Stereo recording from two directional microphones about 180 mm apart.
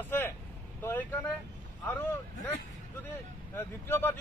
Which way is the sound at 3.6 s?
10° left (ahead or behind).